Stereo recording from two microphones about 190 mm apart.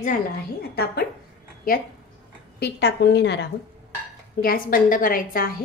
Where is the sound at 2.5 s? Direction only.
60° left (ahead or behind).